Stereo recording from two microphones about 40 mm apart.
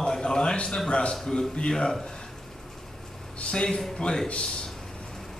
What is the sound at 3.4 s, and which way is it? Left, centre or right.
Speech, left.